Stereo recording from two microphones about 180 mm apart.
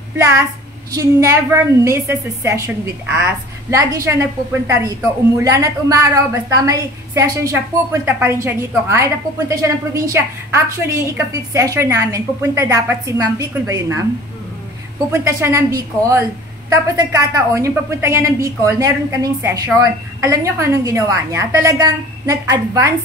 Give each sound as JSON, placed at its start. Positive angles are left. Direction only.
{"t": 0.9, "sound": "a woman's voice", "side_deg": -15}
{"t": 15.0, "sound": "a woman's voice", "side_deg": -15}